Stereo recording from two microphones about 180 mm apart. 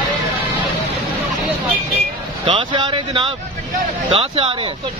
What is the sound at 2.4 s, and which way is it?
Speech, 30° right (ahead or behind).